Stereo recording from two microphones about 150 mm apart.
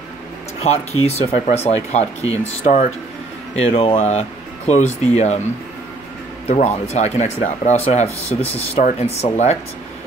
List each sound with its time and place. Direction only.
0.7 s speech: 45° left (ahead or behind)
6.4 s speech: 50° left (ahead or behind)